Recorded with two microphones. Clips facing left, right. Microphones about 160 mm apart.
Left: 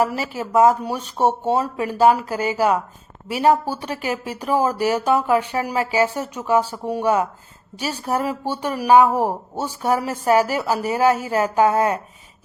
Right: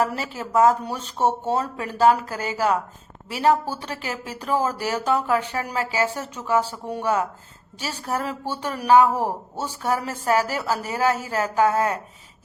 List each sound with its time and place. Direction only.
0.0 s a woman's voice: 10° left (ahead or behind)